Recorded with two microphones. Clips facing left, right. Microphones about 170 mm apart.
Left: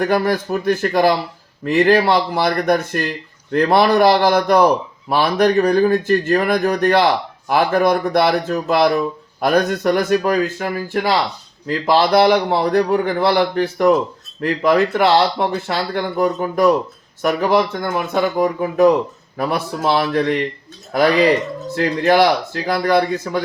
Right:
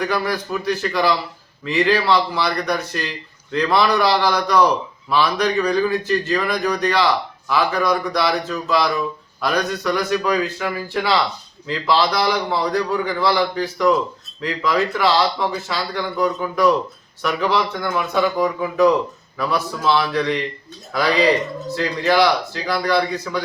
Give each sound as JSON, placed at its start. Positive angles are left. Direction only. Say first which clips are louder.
{"t": 0.0, "sound": "a man's voice", "louder": "left 5 dB", "side_deg": 50}